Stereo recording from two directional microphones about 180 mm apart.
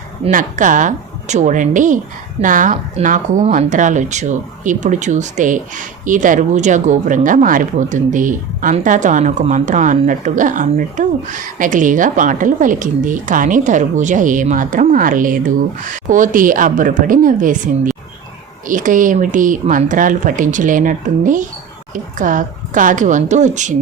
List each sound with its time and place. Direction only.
0.3 s speech: 45° right (ahead or behind)